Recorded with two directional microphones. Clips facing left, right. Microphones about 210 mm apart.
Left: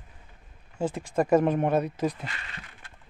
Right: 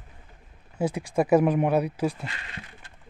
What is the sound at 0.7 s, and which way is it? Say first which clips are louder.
Speech: right 2 dB; 10° right (ahead or behind).